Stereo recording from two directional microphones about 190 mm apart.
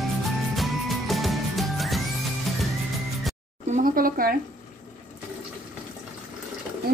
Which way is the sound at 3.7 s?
50° right (ahead or behind).